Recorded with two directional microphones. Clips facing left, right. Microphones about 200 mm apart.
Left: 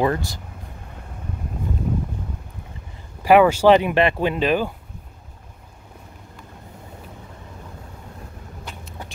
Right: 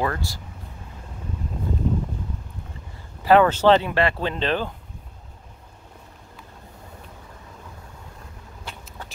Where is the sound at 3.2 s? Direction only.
10° left (ahead or behind).